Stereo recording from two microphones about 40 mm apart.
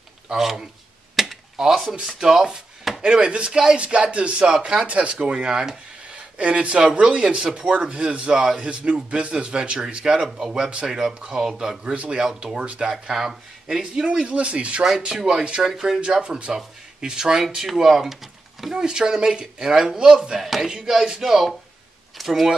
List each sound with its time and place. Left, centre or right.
0.3 s speech: centre
1.2 s a sound: centre
1.6 s a man's voice: centre; by 4.5 s right
4.5 s speech: centre
4.8 s a man's voice: right
5.5 s speech: centre
6.1 s a man's voice: right
11.8 s a man's voice: right
12.9 s a man's voice: centre
14.2 s speech: right
14.8 s speech: centre
15.6 s speech: centre
16.0 s a man's voice: right; by 22.5 s centre